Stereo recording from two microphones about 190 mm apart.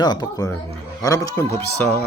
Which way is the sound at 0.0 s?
20° left (ahead or behind).